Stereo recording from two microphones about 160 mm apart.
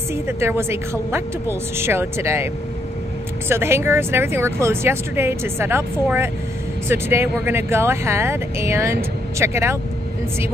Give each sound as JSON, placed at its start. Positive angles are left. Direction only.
{"t": 0.1, "sound": "speech", "side_deg": -15}